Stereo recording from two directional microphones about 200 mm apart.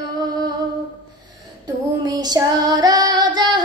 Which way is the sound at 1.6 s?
20° right (ahead or behind).